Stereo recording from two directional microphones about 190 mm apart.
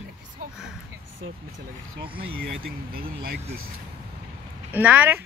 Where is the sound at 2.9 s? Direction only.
55° right (ahead or behind).